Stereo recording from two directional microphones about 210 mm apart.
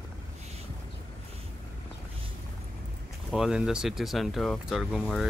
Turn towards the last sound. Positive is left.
turn(degrees=0)  # may be behind; listen again after turning